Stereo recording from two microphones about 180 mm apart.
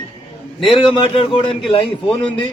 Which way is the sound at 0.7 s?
25° left (ahead or behind).